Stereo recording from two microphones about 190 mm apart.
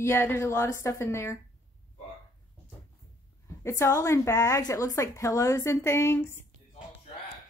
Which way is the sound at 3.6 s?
15° left (ahead or behind).